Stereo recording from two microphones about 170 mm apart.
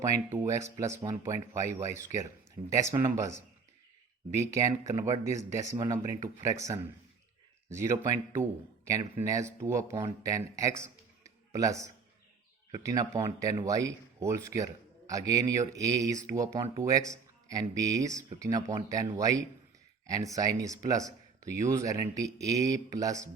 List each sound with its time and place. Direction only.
0.0 s speech: 15° right (ahead or behind)
7.7 s speech: 15° right (ahead or behind)